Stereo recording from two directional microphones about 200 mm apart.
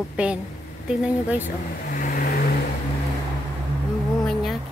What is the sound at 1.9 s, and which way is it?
Vehicle, 45° left (ahead or behind).